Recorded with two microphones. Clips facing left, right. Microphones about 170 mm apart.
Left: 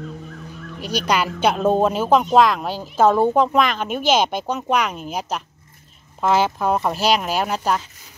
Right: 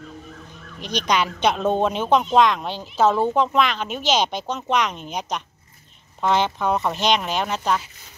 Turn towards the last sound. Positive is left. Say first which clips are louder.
# left 2 dB
turn(degrees=5)  # may be behind; listen again after turning